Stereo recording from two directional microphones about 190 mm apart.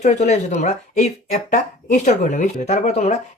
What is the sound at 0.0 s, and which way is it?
Speech, 35° left (ahead or behind).